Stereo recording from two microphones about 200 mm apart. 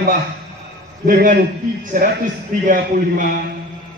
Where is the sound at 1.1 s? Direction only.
45° right (ahead or behind).